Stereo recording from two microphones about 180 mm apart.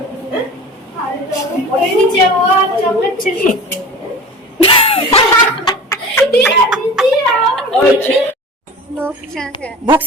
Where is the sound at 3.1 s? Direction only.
50° left (ahead or behind).